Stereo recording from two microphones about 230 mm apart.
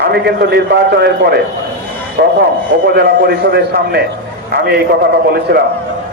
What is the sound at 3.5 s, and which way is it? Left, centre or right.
Speech, right.